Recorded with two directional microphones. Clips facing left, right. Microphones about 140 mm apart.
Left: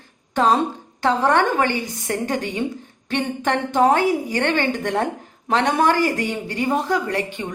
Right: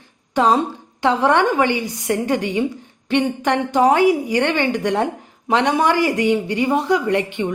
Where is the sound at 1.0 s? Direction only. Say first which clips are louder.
Right 2 dB; 15° right (ahead or behind).